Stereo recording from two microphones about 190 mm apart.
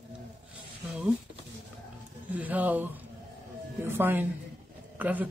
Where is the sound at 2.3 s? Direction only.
10° right (ahead or behind).